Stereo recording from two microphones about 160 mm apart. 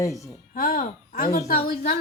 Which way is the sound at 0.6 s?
65° left (ahead or behind).